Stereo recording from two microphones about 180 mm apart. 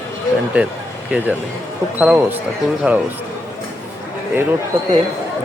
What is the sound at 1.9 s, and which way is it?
Speech, 10° right (ahead or behind).